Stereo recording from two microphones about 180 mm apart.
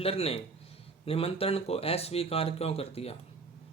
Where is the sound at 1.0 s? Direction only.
30° left (ahead or behind).